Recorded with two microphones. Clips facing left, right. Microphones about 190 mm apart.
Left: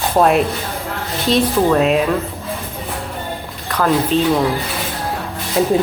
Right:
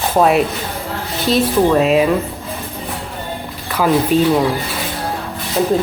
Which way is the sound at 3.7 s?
5° right (ahead or behind).